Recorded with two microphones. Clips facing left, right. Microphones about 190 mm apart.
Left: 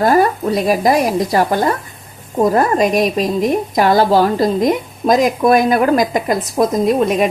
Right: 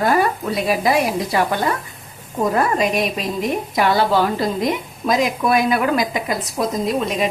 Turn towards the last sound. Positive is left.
turn(degrees=50)  # may be behind; listen again after turning